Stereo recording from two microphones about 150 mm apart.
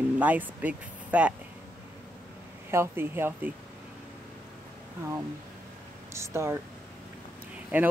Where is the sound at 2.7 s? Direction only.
15° right (ahead or behind).